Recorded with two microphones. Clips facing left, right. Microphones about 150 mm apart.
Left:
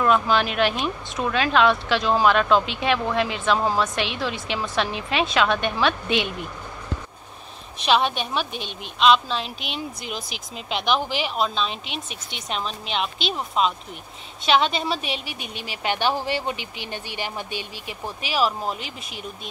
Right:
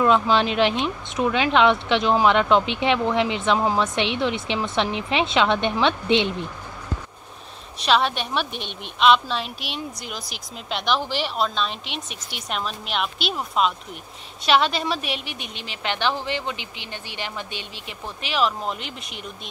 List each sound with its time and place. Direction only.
0.0 s speech: 25° right (ahead or behind)
9.0 s speech: 5° right (ahead or behind)
16.4 s speech: 45° left (ahead or behind)
16.9 s speech: 15° left (ahead or behind)